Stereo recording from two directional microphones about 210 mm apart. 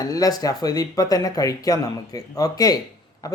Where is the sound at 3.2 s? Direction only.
15° left (ahead or behind).